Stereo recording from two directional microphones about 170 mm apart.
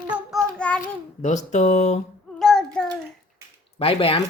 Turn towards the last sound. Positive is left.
turn(degrees=35)  # may be behind; listen again after turning